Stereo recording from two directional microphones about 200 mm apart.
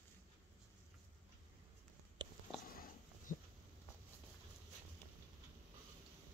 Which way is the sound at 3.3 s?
40° left (ahead or behind).